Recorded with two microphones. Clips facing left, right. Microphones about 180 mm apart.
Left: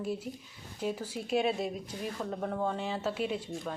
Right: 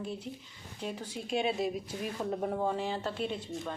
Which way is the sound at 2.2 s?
10° right (ahead or behind).